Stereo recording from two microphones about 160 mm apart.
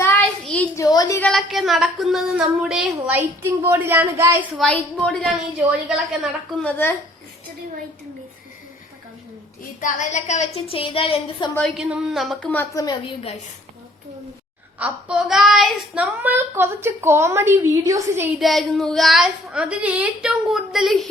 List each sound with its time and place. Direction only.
0.0 s child singing: 10° left (ahead or behind)
0.8 s a sound: 20° left (ahead or behind)
1.2 s a woman's voice: centre (ahead or behind)
3.4 s a child's voice: 15° right (ahead or behind)
4.5 s a woman's voice: 5° left (ahead or behind)
6.6 s speech: 10° left (ahead or behind)
9.8 s a woman's voice: 50° left (ahead or behind); by 11.5 s 30° left (ahead or behind)
11.8 s a woman's voice: 5° right (ahead or behind)
12.7 s a woman's voice: 25° left (ahead or behind)
14.8 s a child's voice: 10° right (ahead or behind)
18.3 s a woman's voice: centre (ahead or behind)